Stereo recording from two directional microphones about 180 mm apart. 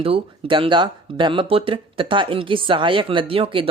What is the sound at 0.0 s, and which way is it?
Speech, 30° right (ahead or behind).